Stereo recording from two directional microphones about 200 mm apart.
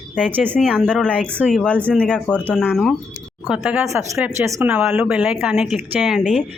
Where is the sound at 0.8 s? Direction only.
5° left (ahead or behind).